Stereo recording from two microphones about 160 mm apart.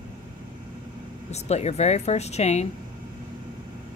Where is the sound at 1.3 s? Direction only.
45° left (ahead or behind).